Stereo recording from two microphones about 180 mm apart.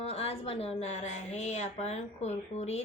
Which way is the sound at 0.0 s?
35° left (ahead or behind).